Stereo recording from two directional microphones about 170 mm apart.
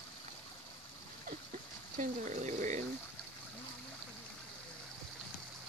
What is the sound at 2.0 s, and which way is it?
Speech, 45° right (ahead or behind).